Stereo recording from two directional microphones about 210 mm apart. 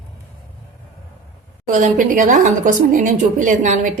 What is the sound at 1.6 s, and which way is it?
A woman's voice, 40° right (ahead or behind).